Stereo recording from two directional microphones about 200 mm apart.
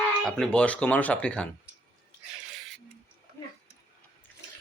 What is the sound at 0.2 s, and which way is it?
Speech, centre (ahead or behind).